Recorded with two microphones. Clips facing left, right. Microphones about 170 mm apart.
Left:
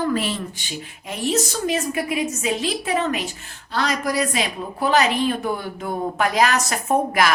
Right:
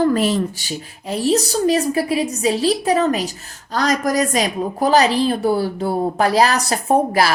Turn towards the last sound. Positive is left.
turn(degrees=-35)  # may be behind; listen again after turning